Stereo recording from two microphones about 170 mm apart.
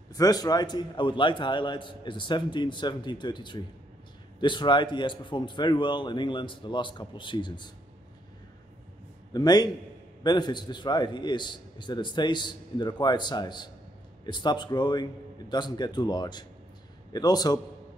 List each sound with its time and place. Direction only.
0.1 s a man's voice: 20° left (ahead or behind)
9.3 s a man's voice: 25° left (ahead or behind)